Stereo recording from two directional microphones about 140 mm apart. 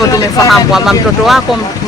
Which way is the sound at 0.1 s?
25° left (ahead or behind).